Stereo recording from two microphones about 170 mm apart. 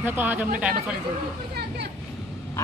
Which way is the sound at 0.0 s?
10° right (ahead or behind).